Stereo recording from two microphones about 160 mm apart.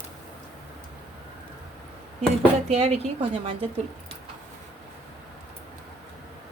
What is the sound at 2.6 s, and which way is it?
Speech, 40° right (ahead or behind).